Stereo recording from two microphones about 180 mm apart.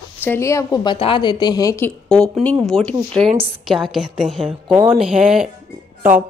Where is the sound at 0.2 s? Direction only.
15° left (ahead or behind).